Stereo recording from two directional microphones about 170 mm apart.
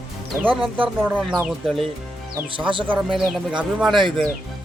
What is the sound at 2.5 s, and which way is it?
Speech, 30° right (ahead or behind).